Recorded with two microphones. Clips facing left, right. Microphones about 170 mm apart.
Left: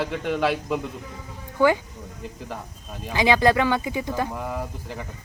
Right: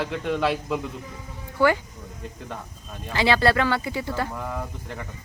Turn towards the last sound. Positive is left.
turn(degrees=10)  # may be behind; listen again after turning